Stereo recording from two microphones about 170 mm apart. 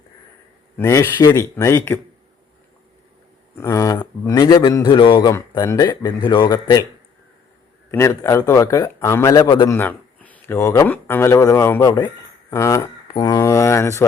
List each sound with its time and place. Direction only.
0.8 s a man's voice: 20° left (ahead or behind)
3.5 s a man's voice: 15° left (ahead or behind)
7.9 s a man's voice: 15° left (ahead or behind)
9.7 s speech: 10° left (ahead or behind)